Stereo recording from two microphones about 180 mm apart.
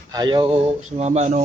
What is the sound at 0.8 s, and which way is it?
Speech, 40° right (ahead or behind).